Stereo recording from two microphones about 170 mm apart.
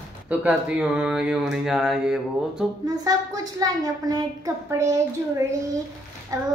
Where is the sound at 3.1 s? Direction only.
20° right (ahead or behind).